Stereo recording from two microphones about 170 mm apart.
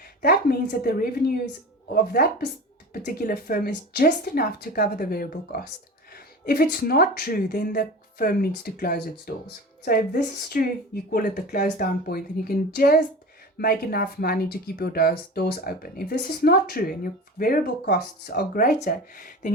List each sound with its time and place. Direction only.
0.2 s speech: 60° left (ahead or behind)